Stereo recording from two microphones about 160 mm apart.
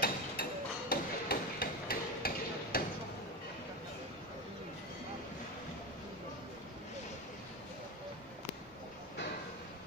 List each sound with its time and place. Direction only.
0.0 s hammer: 75° left (ahead or behind)